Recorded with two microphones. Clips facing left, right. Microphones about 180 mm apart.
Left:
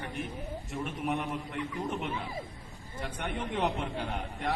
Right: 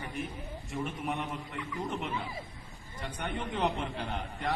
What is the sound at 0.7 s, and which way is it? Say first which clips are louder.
A man's voice: left 1 dB; centre (ahead or behind).